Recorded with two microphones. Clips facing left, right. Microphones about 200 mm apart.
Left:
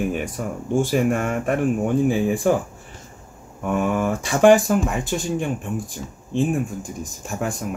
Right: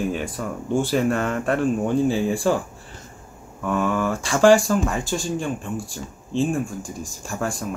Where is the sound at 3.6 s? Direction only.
20° left (ahead or behind).